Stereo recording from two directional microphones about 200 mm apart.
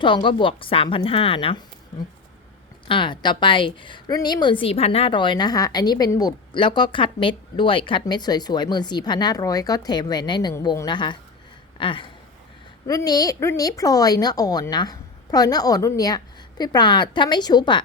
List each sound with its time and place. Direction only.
0.0 s a woman's voice: 25° left (ahead or behind)
2.8 s a woman's voice: 25° left (ahead or behind)